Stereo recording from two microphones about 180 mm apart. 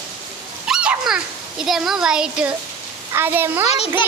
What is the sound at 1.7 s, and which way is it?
A woman's voice, centre (ahead or behind).